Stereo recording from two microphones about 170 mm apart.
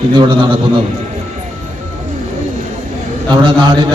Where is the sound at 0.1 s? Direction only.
30° right (ahead or behind).